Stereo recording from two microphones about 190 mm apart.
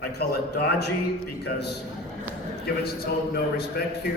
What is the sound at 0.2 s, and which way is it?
A man's voice, 60° left (ahead or behind).